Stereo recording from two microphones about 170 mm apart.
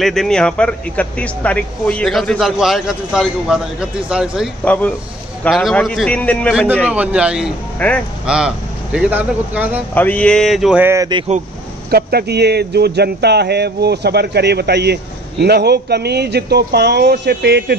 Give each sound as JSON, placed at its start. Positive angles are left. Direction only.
{"t": 0.0, "sound": "speech", "side_deg": 0}
{"t": 5.5, "sound": "speech", "side_deg": 0}
{"t": 6.5, "sound": "speech", "side_deg": -5}
{"t": 7.8, "sound": "speech", "side_deg": 10}
{"t": 8.3, "sound": "speech", "side_deg": -5}
{"t": 9.9, "sound": "speech", "side_deg": 10}
{"t": 11.9, "sound": "speech", "side_deg": -65}